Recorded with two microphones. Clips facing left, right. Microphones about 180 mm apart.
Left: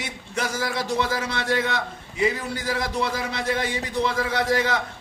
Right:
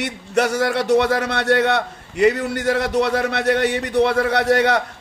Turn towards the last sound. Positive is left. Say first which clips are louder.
# right 6 dB
turn(degrees=-70)  # may be behind; listen again after turning